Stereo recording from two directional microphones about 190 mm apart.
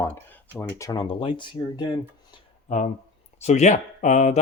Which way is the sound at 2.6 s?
40° left (ahead or behind).